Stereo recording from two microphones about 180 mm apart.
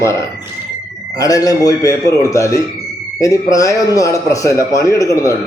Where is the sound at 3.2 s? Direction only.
20° left (ahead or behind).